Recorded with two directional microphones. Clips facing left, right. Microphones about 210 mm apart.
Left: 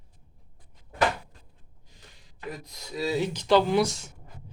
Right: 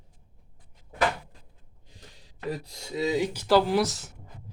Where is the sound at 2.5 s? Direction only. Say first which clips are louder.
Right 4 dB; 30° right (ahead or behind).